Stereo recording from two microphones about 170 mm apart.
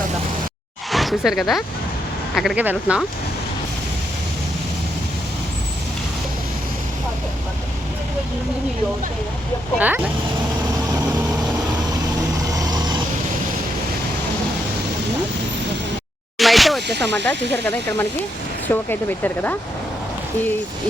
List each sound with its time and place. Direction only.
0.9 s speech: centre (ahead or behind)
9.7 s speech: 10° right (ahead or behind)
12.5 s vehicle: 20° right (ahead or behind)
16.4 s a sound: centre (ahead or behind)
16.8 s speech: 80° right
17.2 s speech: 10° left (ahead or behind)